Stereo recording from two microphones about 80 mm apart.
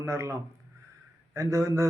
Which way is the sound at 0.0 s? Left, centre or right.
Right.